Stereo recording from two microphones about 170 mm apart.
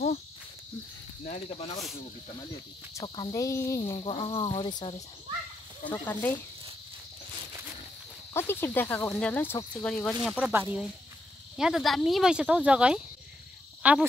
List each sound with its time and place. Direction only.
1.2 s speech: 40° left (ahead or behind)
2.9 s cricket: 20° left (ahead or behind)
3.8 s speech: 35° left (ahead or behind)
4.6 s cricket: 25° left (ahead or behind)
5.9 s speech: 10° left (ahead or behind)
8.3 s speech: 15° left (ahead or behind)
10.5 s speech: 10° right (ahead or behind)